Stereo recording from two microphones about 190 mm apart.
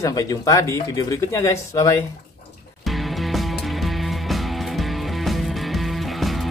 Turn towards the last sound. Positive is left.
turn(degrees=0)  # may be behind; listen again after turning